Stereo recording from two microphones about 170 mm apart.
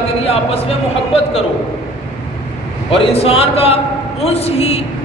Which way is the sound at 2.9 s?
35° left (ahead or behind).